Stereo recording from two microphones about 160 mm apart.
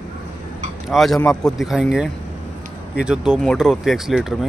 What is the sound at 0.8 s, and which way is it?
Speech, centre (ahead or behind).